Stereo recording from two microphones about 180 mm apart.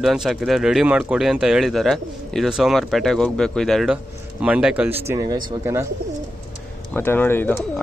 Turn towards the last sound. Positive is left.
turn(degrees=10)  # may be behind; listen again after turning